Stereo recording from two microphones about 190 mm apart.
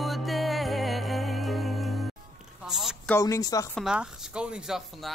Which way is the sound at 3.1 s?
15° left (ahead or behind).